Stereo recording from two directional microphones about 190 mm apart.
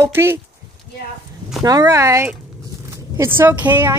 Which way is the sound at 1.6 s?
20° right (ahead or behind).